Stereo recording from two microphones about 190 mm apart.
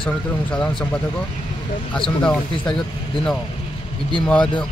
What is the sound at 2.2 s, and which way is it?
Speech, 5° left (ahead or behind).